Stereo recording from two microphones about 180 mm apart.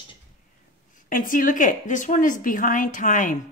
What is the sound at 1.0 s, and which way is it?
A woman's voice, 50° left (ahead or behind).